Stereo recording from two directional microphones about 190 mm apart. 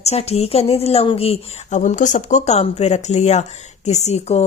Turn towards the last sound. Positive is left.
turn(degrees=35)  # may be behind; listen again after turning